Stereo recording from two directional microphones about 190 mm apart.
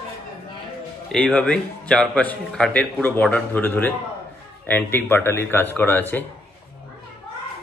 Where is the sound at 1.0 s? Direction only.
5° left (ahead or behind).